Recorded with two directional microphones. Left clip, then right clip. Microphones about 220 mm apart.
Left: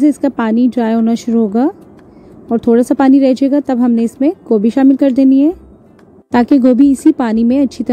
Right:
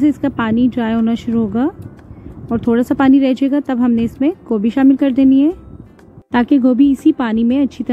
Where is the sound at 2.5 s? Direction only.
20° left (ahead or behind).